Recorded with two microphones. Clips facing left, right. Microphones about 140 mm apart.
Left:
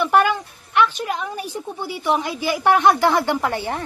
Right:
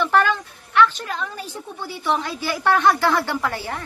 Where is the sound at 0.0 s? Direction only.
15° left (ahead or behind).